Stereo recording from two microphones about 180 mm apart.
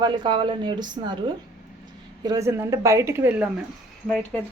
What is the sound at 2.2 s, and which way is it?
Speech, 20° right (ahead or behind).